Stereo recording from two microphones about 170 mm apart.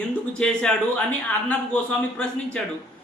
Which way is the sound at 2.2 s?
5° left (ahead or behind).